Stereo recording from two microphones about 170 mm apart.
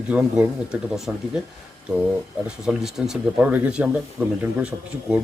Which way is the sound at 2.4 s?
5° right (ahead or behind).